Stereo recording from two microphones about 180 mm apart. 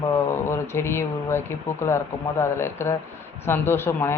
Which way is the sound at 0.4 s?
15° left (ahead or behind).